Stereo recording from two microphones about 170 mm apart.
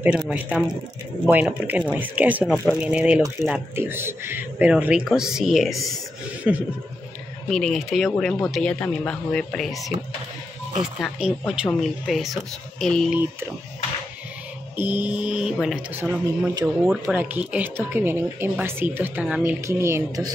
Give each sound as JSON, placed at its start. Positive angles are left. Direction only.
{"t": 0.3, "sound": "speech", "side_deg": -5}
{"t": 2.4, "sound": "speech", "side_deg": 5}
{"t": 2.8, "sound": "speech", "side_deg": -5}
{"t": 10.8, "sound": "speech", "side_deg": -5}
{"t": 14.8, "sound": "speech", "side_deg": -10}
{"t": 16.8, "sound": "speech", "side_deg": -5}